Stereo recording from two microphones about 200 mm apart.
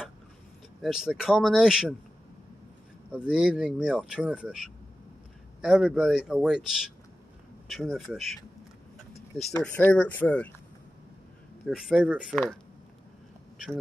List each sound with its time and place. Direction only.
0.8 s speech: centre (ahead or behind)
3.1 s speech: 5° right (ahead or behind)
9.6 s speech: 10° left (ahead or behind)
11.6 s speech: 5° right (ahead or behind)